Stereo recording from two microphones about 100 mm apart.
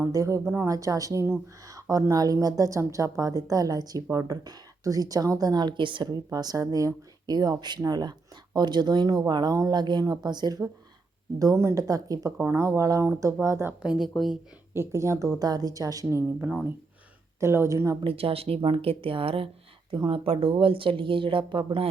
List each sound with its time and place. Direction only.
0.1 s a woman's voice: 30° right (ahead or behind)
0.7 s speech: 35° right (ahead or behind); by 6.1 s 55° right (ahead or behind)
6.1 s a woman's voice: 40° right (ahead or behind)
13.8 s speech: 5° right (ahead or behind)
14.7 s speech: 25° right (ahead or behind)
16.0 s a woman's voice: 25° right (ahead or behind)
18.0 s speech: 70° right (ahead or behind)
19.9 s speech: 55° right (ahead or behind)